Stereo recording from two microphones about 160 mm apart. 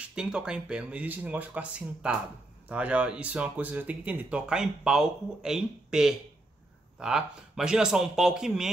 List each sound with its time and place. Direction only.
0.0 s speech: 5° right (ahead or behind)